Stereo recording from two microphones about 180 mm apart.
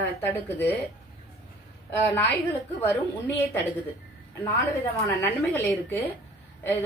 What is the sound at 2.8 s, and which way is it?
Speech, 10° left (ahead or behind).